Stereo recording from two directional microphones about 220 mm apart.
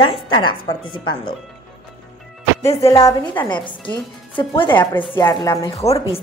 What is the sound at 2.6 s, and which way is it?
A woman's voice, 15° left (ahead or behind).